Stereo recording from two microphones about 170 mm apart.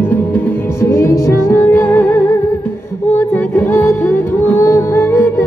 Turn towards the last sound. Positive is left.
turn(degrees=15)  # may be behind; listen again after turning